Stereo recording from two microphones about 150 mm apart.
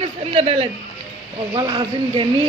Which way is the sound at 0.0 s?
40° right (ahead or behind).